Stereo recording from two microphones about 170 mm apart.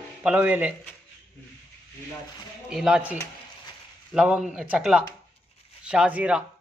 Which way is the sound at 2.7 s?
5° right (ahead or behind).